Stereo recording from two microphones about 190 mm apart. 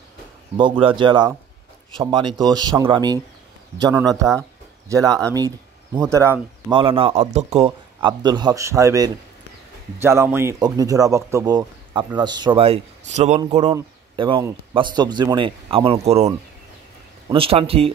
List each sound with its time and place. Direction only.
0.6 s speech: 25° right (ahead or behind)
6.7 s speech: 25° right (ahead or behind)
17.3 s speech: 30° right (ahead or behind)